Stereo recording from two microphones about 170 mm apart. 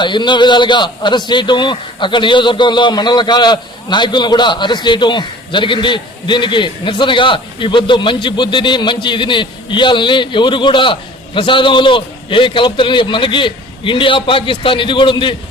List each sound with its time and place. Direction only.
0.0 s a man's voice: 25° left (ahead or behind)